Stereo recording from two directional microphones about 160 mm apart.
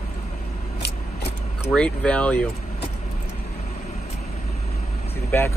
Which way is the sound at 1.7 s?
5° left (ahead or behind).